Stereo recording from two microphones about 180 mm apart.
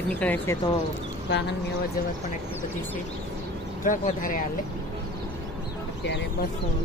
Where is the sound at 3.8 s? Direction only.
50° left (ahead or behind).